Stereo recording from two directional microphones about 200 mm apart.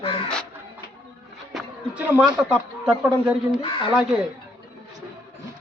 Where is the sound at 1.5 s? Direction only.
5° right (ahead or behind).